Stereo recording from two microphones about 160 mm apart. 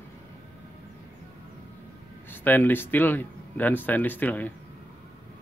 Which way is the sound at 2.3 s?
10° left (ahead or behind).